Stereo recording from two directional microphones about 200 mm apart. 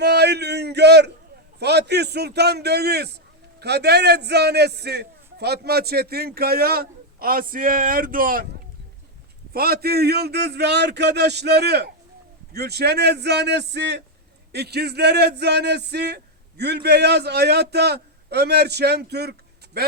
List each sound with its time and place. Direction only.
0.0 s a sound: 55° right (ahead or behind)
1.5 s a man's voice: 55° right (ahead or behind)
9.5 s speech: 50° right (ahead or behind)